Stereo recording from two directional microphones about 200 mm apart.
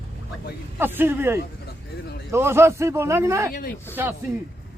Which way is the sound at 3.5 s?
45° left (ahead or behind).